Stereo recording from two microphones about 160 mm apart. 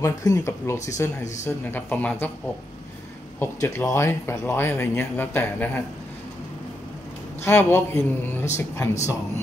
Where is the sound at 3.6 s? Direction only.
20° left (ahead or behind).